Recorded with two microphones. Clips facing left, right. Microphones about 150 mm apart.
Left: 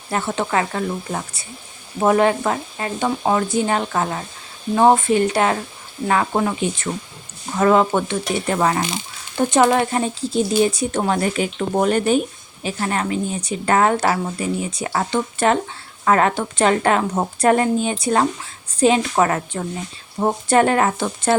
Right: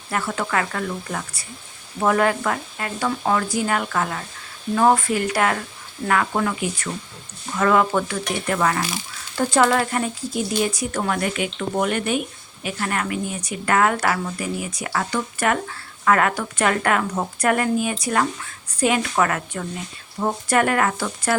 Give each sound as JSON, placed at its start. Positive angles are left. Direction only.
{"t": 0.1, "sound": "a woman's voice", "side_deg": 25}